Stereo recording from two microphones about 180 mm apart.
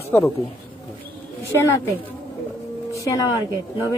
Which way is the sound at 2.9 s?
15° left (ahead or behind).